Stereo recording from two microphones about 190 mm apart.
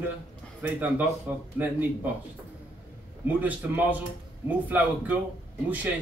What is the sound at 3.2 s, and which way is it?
A man's voice, 10° right (ahead or behind).